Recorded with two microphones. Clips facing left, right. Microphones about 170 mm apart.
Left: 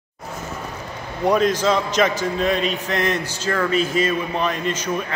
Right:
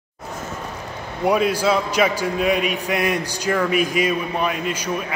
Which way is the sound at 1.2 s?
10° right (ahead or behind).